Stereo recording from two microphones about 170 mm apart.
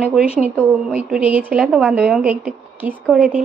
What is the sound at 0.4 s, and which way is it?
A woman's voice, 10° right (ahead or behind).